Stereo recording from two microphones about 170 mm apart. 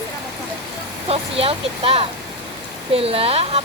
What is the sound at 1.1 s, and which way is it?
Speech, 35° right (ahead or behind).